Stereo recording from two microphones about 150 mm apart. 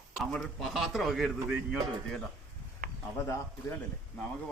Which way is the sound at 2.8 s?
90° right.